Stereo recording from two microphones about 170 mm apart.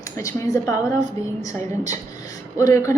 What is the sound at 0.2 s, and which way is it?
A woman's voice, 20° left (ahead or behind).